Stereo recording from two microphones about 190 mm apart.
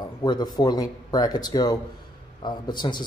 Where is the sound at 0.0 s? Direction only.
20° left (ahead or behind).